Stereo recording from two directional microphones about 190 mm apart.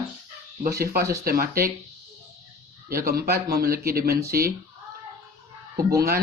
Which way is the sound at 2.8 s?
55° right (ahead or behind).